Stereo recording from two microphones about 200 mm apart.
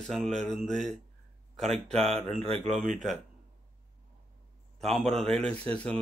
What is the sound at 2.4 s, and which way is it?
Speech, 30° right (ahead or behind).